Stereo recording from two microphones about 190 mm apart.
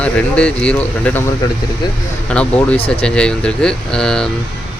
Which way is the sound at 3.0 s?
5° left (ahead or behind).